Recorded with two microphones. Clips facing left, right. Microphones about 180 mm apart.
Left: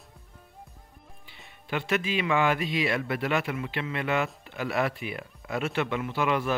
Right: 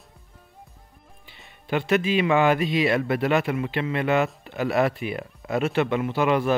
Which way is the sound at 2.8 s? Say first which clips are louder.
Right 6 dB; 35° right (ahead or behind).